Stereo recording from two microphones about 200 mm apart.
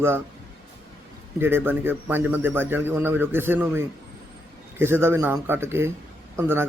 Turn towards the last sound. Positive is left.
turn(degrees=-10)  # may be behind; listen again after turning